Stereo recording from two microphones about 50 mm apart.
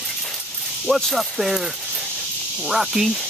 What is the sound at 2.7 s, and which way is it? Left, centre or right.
Speech, centre.